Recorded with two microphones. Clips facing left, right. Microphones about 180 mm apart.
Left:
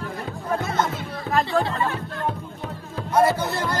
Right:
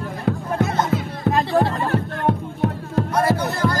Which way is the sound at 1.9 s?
70° right (ahead or behind).